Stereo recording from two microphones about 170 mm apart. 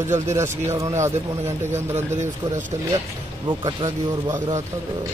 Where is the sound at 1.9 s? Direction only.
45° right (ahead or behind).